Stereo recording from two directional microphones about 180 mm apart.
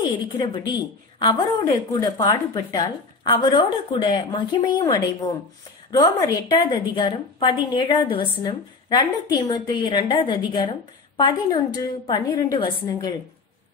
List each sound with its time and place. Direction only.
0.4 s a woman's voice: 30° left (ahead or behind)